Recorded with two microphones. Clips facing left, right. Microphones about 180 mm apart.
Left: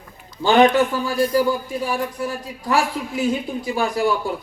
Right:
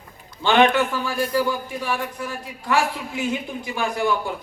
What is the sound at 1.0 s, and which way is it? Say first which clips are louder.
Speech: left 4 dB; 35° left (ahead or behind).